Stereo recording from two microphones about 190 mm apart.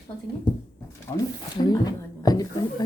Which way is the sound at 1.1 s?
20° left (ahead or behind).